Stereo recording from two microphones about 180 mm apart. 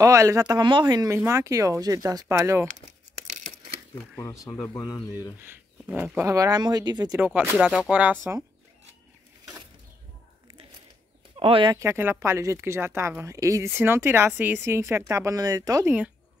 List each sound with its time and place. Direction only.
0.0 s speech: 15° right (ahead or behind)
4.2 s speech: 15° left (ahead or behind)
5.4 s speech: 10° right (ahead or behind)
7.2 s speech: 10° right (ahead or behind)
11.3 s speech: 30° right (ahead or behind)
11.7 s speech: 15° right (ahead or behind)